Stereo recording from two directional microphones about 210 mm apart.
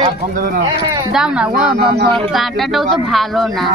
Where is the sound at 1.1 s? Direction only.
5° right (ahead or behind).